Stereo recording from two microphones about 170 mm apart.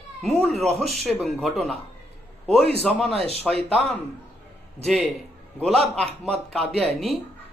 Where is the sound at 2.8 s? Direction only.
Centre (ahead or behind).